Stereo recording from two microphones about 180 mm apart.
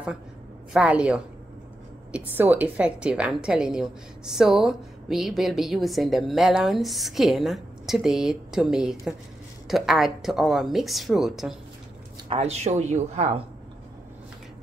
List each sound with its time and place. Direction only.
0.7 s a woman's voice: 5° right (ahead or behind)
12.3 s speech: 35° right (ahead or behind)